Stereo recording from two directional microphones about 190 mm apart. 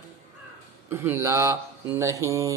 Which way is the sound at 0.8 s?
10° right (ahead or behind).